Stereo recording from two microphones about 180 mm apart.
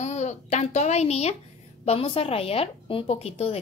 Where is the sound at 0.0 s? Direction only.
40° left (ahead or behind).